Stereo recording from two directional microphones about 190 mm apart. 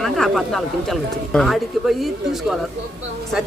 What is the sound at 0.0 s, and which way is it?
Speech, centre (ahead or behind).